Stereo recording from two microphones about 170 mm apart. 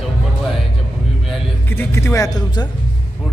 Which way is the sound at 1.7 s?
15° left (ahead or behind).